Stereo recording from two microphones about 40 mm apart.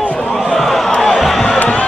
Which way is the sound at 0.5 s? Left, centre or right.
Centre.